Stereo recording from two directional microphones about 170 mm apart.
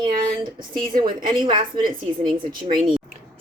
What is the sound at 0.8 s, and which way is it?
Speech, 55° right (ahead or behind).